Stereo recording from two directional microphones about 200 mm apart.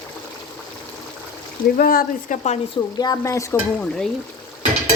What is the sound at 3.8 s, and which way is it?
Speech, 5° left (ahead or behind).